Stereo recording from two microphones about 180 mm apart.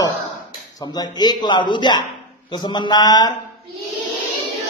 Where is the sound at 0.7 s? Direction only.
20° left (ahead or behind).